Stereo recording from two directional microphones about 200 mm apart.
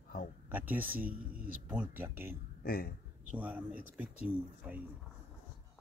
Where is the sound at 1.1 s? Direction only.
45° right (ahead or behind).